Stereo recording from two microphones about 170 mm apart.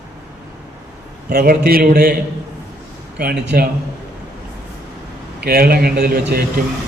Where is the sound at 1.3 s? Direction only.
65° right (ahead or behind).